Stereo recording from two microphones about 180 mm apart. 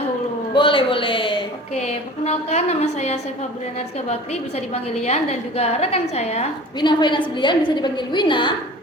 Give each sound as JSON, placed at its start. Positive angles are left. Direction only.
{"t": 0.5, "sound": "a woman's voice", "side_deg": 30}
{"t": 4.3, "sound": "a woman's voice", "side_deg": 35}
{"t": 6.7, "sound": "a woman's voice", "side_deg": 25}